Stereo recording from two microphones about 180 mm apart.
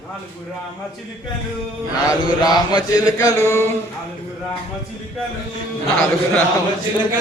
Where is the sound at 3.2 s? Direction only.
15° left (ahead or behind).